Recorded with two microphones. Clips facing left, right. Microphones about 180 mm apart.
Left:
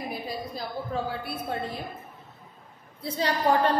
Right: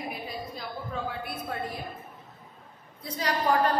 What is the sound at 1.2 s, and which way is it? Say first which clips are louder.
Speech: left 2 dB; 30° left (ahead or behind).